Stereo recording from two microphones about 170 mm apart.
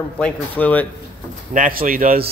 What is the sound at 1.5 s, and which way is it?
Speech, 55° right (ahead or behind).